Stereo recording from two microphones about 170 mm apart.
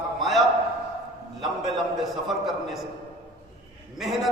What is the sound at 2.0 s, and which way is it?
Speech, centre (ahead or behind).